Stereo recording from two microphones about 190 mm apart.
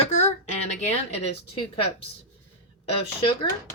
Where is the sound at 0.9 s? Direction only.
35° left (ahead or behind).